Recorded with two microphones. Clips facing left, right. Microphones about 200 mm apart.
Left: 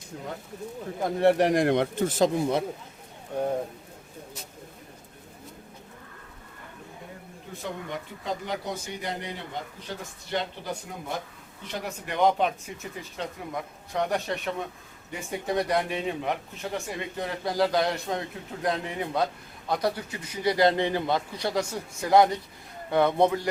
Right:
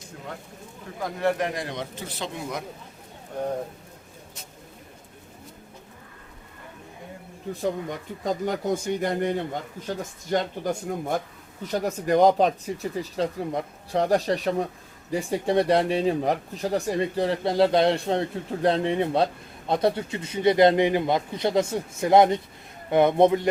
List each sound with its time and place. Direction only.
0.9 s speech: 25° left (ahead or behind)
1.5 s speech: 60° left (ahead or behind)
7.6 s speech: 40° right (ahead or behind); by 23.5 s 20° right (ahead or behind)